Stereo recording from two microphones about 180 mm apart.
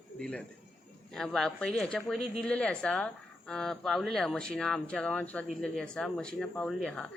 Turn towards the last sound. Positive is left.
turn(degrees=0)  # may be behind; listen again after turning